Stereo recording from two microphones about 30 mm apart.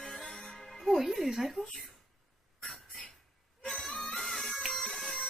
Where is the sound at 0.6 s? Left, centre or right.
Centre.